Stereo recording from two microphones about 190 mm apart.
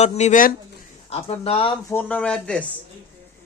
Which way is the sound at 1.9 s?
5° left (ahead or behind).